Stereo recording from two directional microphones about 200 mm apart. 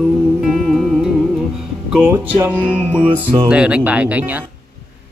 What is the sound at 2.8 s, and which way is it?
Music, 25° right (ahead or behind).